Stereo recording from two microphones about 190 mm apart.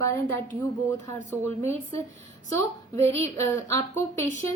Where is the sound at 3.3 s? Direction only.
15° left (ahead or behind).